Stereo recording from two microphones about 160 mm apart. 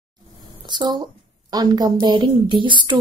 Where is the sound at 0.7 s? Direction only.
30° right (ahead or behind).